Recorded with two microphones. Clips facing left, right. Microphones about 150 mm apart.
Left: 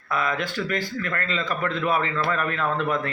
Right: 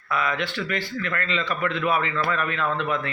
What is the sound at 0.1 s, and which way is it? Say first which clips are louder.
A man's voice: even; 40° left (ahead or behind).